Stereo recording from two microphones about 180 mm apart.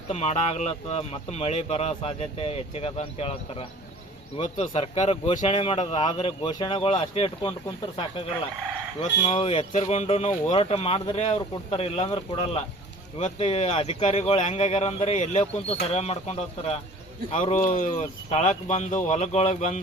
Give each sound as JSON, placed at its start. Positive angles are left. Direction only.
{"t": 0.1, "sound": "speech", "side_deg": 35}
{"t": 9.0, "sound": "speech", "side_deg": 40}